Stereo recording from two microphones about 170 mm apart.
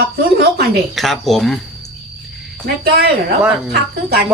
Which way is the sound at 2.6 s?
70° right (ahead or behind).